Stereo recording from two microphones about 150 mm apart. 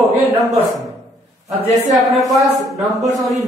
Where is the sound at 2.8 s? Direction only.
Centre (ahead or behind).